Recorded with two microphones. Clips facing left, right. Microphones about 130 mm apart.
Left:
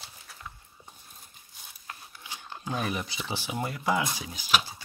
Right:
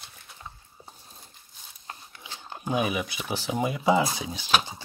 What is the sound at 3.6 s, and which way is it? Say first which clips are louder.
Speech: right 6 dB; 20° right (ahead or behind).